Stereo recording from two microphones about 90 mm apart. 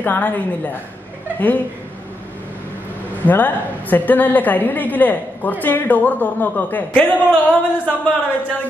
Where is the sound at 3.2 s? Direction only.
20° left (ahead or behind).